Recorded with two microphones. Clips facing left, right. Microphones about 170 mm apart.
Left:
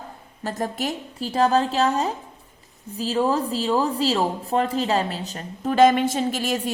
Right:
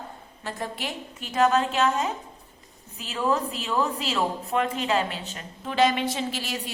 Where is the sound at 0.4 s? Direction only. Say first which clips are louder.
Left 6 dB; 40° left (ahead or behind).